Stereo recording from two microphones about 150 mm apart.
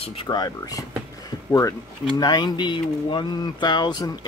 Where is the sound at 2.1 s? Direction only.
30° left (ahead or behind).